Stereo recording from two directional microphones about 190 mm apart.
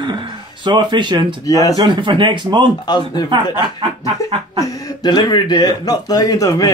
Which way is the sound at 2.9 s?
25° left (ahead or behind).